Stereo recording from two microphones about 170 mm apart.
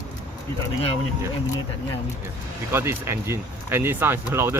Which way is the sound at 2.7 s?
15° right (ahead or behind).